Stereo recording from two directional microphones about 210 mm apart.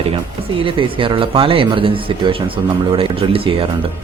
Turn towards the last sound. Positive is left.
turn(degrees=-25)  # may be behind; listen again after turning